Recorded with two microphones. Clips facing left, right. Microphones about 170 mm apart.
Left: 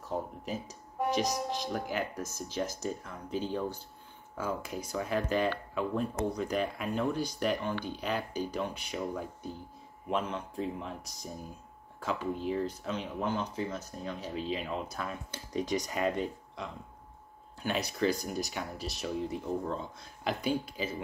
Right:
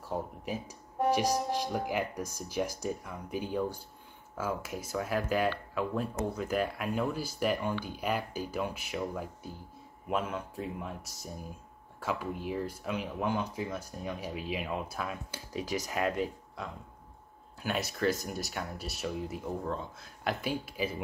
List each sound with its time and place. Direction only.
0.0 s speech: 10° right (ahead or behind)